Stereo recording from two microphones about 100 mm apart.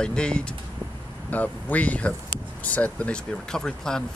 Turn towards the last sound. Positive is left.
turn(degrees=5)  # may be behind; listen again after turning